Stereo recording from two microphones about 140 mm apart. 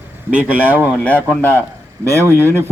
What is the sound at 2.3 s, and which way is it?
Speech, 15° left (ahead or behind).